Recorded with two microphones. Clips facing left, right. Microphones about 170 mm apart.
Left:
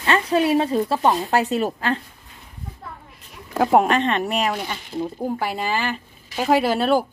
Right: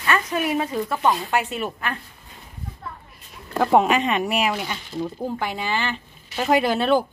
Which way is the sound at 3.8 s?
5° right (ahead or behind).